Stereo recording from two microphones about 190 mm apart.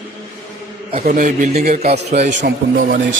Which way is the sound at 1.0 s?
45° right (ahead or behind).